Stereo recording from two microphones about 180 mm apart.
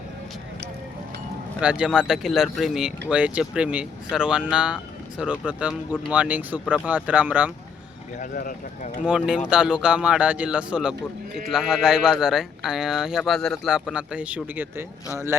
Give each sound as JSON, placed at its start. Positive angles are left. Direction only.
{"t": 1.6, "sound": "speech", "side_deg": -5}
{"t": 8.2, "sound": "speech", "side_deg": 50}
{"t": 9.0, "sound": "speech", "side_deg": -5}